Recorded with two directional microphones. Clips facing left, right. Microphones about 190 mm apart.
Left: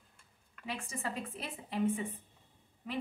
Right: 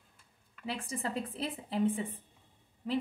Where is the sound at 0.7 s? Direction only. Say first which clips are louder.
Right 4 dB; 35° right (ahead or behind).